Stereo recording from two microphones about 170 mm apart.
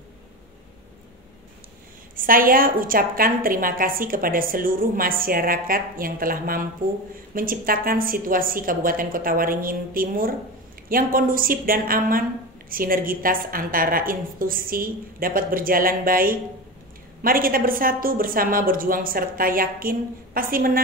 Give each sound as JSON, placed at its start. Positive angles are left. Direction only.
{"t": 2.1, "sound": "a woman's voice", "side_deg": -55}